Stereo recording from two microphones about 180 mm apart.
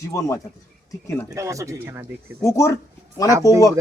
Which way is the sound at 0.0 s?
15° left (ahead or behind).